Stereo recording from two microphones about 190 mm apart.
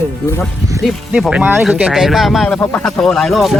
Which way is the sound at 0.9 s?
Centre (ahead or behind).